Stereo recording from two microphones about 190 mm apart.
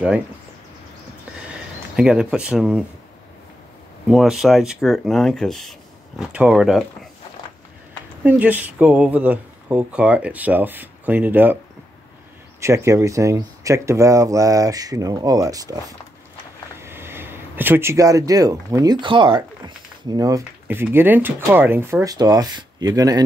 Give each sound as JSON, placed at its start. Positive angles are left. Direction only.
{"t": 2.0, "sound": "speech", "side_deg": -5}
{"t": 4.1, "sound": "speech", "side_deg": 0}
{"t": 8.2, "sound": "speech", "side_deg": -10}
{"t": 12.5, "sound": "speech", "side_deg": -15}
{"t": 16.8, "sound": "speech", "side_deg": -10}